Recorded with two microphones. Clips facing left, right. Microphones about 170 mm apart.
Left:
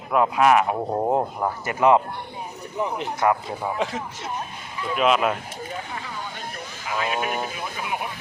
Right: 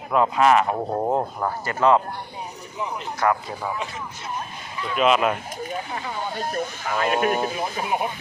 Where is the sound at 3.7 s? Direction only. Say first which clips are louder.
Left 4 dB; 90° left.